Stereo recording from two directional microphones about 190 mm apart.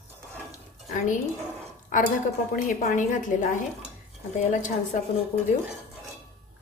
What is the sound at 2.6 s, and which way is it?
Speech, 40° left (ahead or behind).